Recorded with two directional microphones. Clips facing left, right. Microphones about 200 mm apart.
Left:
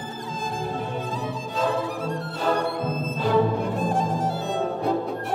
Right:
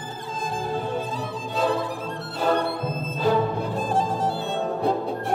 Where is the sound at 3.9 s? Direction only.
30° right (ahead or behind).